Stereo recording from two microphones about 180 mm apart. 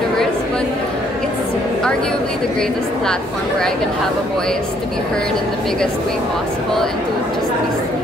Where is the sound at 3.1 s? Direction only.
5° left (ahead or behind).